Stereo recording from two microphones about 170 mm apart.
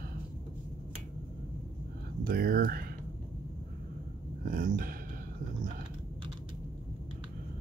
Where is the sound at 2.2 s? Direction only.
60° right (ahead or behind).